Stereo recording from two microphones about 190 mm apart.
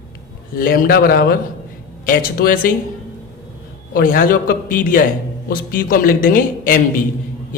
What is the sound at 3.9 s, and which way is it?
A man's voice, 45° left (ahead or behind).